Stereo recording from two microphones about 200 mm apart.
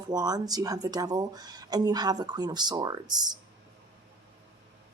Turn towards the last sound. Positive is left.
turn(degrees=-20)  # may be behind; listen again after turning